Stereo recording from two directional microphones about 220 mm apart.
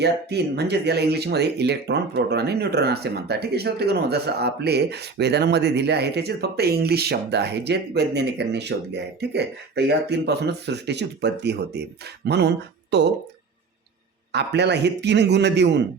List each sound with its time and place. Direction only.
0.0 s speech: 50° right (ahead or behind)
14.3 s speech: 50° right (ahead or behind)